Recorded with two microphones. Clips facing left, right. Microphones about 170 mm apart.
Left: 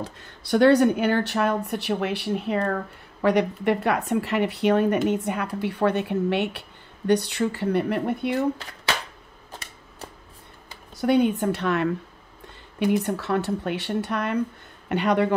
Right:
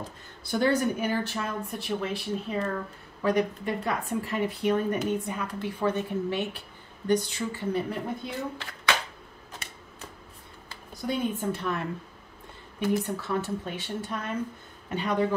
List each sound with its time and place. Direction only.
0.0 s a woman's voice: 75° left (ahead or behind)
11.0 s a woman's voice: 70° left (ahead or behind)
13.0 s a woman's voice: 70° left (ahead or behind)